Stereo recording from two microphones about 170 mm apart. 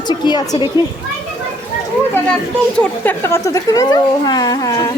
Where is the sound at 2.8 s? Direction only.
10° left (ahead or behind).